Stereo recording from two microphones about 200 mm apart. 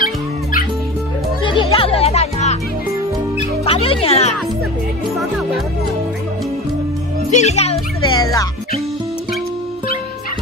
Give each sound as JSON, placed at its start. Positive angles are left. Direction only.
{"t": 0.0, "sound": "music", "side_deg": 45}
{"t": 1.4, "sound": "music", "side_deg": 25}
{"t": 3.6, "sound": "music", "side_deg": 30}
{"t": 7.2, "sound": "music", "side_deg": 35}
{"t": 8.2, "sound": "music", "side_deg": 15}